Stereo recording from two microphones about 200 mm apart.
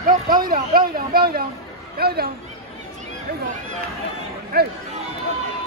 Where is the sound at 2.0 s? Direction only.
50° right (ahead or behind).